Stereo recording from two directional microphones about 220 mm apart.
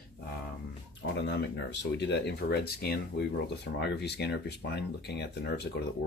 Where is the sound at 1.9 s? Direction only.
50° left (ahead or behind).